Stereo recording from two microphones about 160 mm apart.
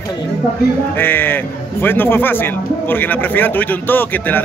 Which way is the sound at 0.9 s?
15° left (ahead or behind).